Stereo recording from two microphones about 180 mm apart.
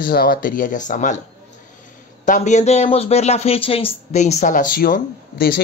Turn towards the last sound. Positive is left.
turn(degrees=55)  # may be behind; listen again after turning